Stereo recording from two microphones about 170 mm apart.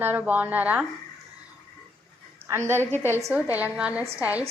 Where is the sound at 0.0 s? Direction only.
10° right (ahead or behind).